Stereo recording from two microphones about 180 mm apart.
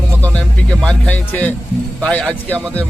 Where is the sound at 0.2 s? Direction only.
5° left (ahead or behind).